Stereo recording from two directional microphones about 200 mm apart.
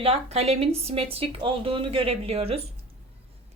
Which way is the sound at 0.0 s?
30° right (ahead or behind).